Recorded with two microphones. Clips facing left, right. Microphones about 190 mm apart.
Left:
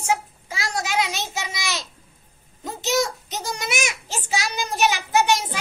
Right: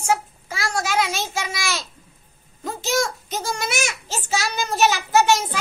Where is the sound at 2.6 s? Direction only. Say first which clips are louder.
Even; 20° left (ahead or behind).